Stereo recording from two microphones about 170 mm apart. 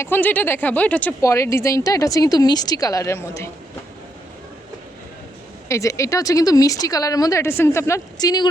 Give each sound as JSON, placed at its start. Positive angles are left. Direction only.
{"t": 0.0, "sound": "speech", "side_deg": 10}
{"t": 5.6, "sound": "speech", "side_deg": 15}